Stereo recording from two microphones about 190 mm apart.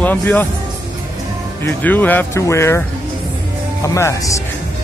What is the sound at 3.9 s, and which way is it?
Speech, 15° left (ahead or behind).